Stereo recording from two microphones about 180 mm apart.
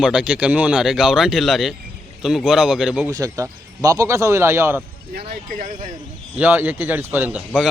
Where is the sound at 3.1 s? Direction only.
20° right (ahead or behind).